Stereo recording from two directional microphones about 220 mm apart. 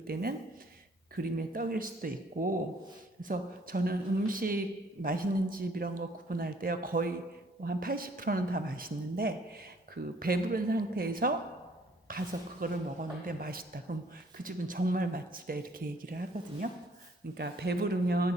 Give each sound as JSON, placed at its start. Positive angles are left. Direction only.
{"t": 0.1, "sound": "speech", "side_deg": -40}